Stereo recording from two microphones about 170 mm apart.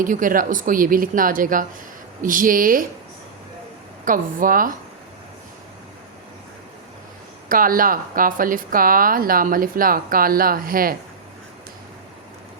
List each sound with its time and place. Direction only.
0.0 s speech: 50° right (ahead or behind)
4.0 s speech: 55° right (ahead or behind)
7.5 s a woman's voice: 55° right (ahead or behind)